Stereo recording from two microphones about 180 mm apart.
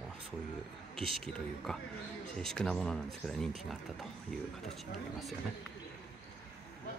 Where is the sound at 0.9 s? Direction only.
30° right (ahead or behind).